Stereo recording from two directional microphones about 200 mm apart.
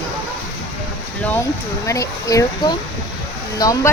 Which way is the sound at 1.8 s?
15° left (ahead or behind).